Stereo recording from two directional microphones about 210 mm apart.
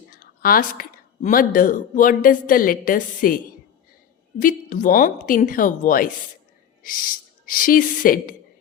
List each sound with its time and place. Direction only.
0.1 s a woman's voice: 40° left (ahead or behind)